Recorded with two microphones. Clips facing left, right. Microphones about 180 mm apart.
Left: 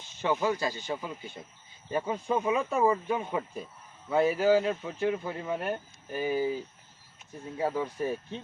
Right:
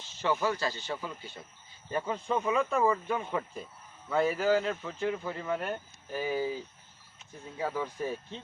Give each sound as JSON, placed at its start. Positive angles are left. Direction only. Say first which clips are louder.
{"t": 0.0, "sound": "speech", "louder": "left 1 dB", "side_deg": 15}
{"t": 7.6, "sound": "speech", "louder": "left 3 dB", "side_deg": 15}